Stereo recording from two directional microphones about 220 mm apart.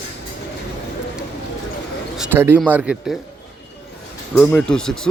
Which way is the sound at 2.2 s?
10° right (ahead or behind).